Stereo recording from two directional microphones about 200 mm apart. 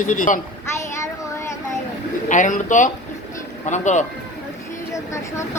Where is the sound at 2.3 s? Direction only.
40° left (ahead or behind).